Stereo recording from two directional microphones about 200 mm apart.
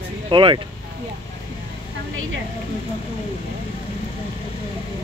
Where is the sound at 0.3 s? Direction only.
25° right (ahead or behind).